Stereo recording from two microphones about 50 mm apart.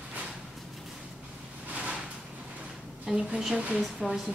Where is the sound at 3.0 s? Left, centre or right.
Right.